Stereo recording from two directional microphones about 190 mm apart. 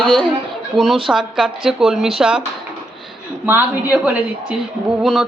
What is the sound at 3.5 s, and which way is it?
Speech, 10° right (ahead or behind).